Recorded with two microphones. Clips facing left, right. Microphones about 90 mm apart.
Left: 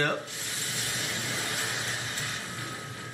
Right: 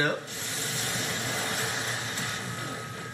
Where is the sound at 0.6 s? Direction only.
30° right (ahead or behind).